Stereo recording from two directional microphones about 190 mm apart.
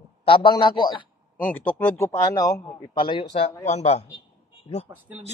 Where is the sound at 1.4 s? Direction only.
10° left (ahead or behind); by 4.0 s 35° left (ahead or behind).